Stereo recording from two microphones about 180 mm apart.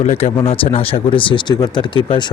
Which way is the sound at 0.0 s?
35° left (ahead or behind).